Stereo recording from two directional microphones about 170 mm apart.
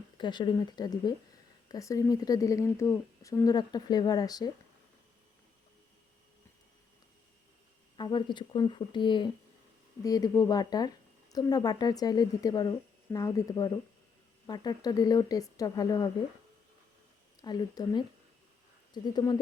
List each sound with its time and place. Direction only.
0.2 s a woman's voice: 25° left (ahead or behind)
7.9 s a woman's voice: 25° left (ahead or behind)
17.4 s a woman's voice: 25° left (ahead or behind)
19.0 s a woman's voice: 25° left (ahead or behind)